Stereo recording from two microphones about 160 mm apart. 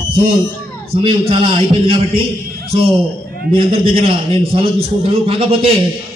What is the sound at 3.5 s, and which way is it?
A man's voice, 35° right (ahead or behind).